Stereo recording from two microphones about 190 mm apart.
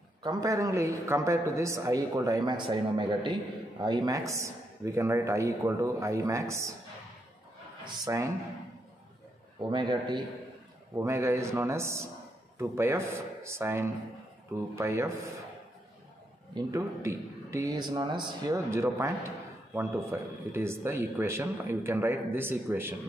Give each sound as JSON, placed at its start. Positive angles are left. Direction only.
{"t": 0.2, "sound": "a man's voice", "side_deg": -20}
{"t": 7.8, "sound": "a man's voice", "side_deg": -20}
{"t": 9.6, "sound": "a man's voice", "side_deg": -25}
{"t": 16.5, "sound": "a man's voice", "side_deg": -15}